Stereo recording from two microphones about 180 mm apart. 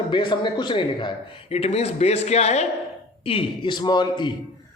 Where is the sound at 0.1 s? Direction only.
25° left (ahead or behind).